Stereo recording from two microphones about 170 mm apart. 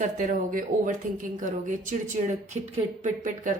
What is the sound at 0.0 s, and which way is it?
A woman's voice, 45° right (ahead or behind).